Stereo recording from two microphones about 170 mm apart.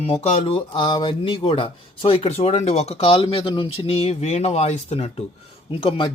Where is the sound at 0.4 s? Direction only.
30° left (ahead or behind).